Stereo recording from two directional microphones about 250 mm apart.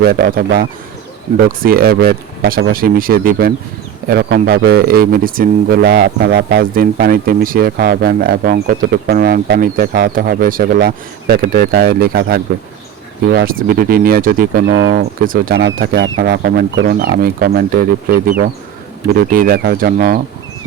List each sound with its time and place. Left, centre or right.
0.0 s speech: right